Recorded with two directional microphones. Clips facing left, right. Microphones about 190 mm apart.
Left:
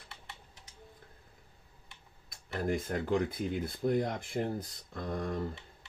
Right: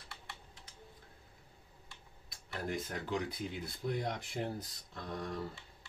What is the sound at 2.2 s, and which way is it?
Speech, 50° left (ahead or behind).